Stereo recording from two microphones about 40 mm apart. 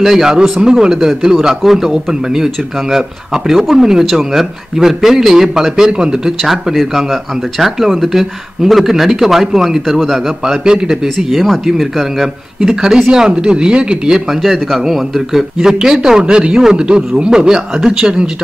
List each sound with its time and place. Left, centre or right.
0.0 s a man's voice: centre
4.0 s a man's voice: centre
6.4 s speech: centre
10.4 s a man's voice: centre
12.5 s speech: centre
14.1 s a man's voice: centre